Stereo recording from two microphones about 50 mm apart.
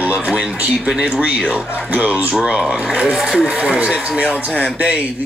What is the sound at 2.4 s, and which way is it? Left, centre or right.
Speech, centre.